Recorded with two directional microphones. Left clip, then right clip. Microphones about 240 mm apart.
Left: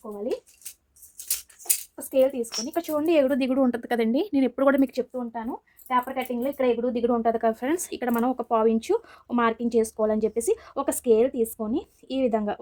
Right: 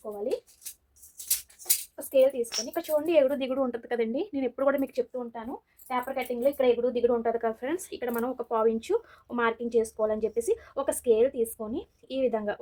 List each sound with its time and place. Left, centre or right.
2.0 s speech: left
5.1 s speech: left